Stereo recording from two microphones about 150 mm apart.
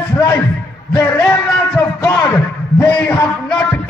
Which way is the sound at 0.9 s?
20° left (ahead or behind).